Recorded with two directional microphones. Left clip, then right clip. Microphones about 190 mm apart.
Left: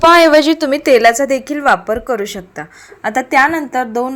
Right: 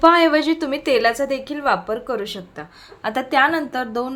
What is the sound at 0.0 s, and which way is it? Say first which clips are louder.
A woman's voice: left 7 dB; 45° left (ahead or behind).